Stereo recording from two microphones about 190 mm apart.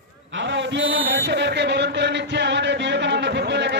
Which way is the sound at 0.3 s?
75° right (ahead or behind).